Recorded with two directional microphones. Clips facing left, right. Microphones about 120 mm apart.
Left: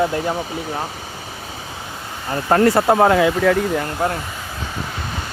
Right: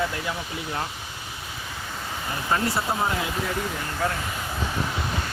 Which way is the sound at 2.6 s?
70° left (ahead or behind).